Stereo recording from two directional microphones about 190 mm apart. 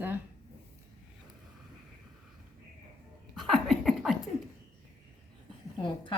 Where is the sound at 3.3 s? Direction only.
Centre (ahead or behind).